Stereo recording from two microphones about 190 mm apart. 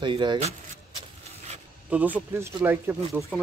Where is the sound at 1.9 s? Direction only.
5° right (ahead or behind).